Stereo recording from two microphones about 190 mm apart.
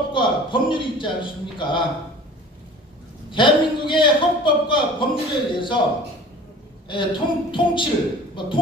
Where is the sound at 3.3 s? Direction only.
25° left (ahead or behind).